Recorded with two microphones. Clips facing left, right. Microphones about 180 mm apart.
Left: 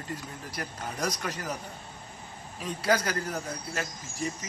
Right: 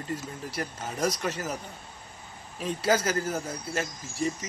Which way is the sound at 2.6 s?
25° right (ahead or behind).